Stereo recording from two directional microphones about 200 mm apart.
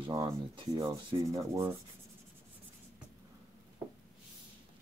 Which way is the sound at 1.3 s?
15° right (ahead or behind).